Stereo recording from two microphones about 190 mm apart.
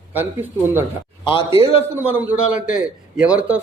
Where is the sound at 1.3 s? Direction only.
25° left (ahead or behind).